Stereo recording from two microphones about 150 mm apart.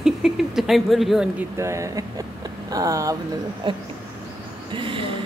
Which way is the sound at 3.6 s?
35° right (ahead or behind).